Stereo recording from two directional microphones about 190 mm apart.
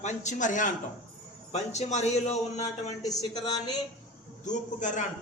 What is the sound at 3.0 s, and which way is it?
Speech, 20° left (ahead or behind).